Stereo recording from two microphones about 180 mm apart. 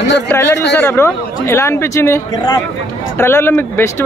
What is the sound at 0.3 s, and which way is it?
Speech, 15° left (ahead or behind).